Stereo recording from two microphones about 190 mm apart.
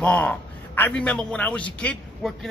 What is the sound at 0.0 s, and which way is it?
A man's voice, 5° left (ahead or behind).